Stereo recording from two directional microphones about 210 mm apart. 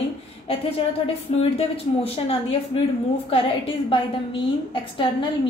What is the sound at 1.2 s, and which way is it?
Speech, 30° left (ahead or behind).